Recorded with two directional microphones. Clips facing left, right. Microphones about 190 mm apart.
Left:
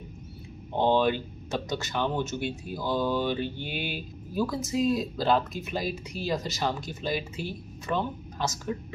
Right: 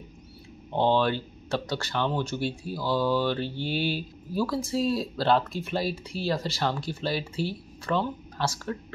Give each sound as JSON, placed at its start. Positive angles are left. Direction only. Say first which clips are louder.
{"t": 0.7, "sound": "speech", "louder": "even", "side_deg": 15}
{"t": 3.4, "sound": "mantra", "louder": "right 5 dB", "side_deg": 55}
{"t": 4.4, "sound": "speech", "louder": "right 1 dB", "side_deg": 20}
{"t": 5.2, "sound": "speech", "louder": "right 3 dB", "side_deg": 0}
{"t": 6.2, "sound": "speech", "louder": "right 1 dB", "side_deg": 15}